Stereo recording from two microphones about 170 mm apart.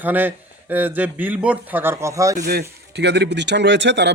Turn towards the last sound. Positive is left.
turn(degrees=-90)